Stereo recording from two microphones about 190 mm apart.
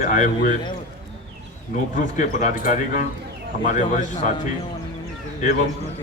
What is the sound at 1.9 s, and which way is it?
Speech, 40° left (ahead or behind).